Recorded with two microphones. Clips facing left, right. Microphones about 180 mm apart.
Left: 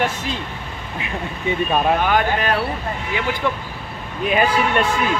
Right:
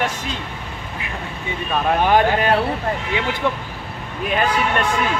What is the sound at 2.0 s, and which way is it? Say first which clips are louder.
Speech: right 3 dB; 30° right (ahead or behind).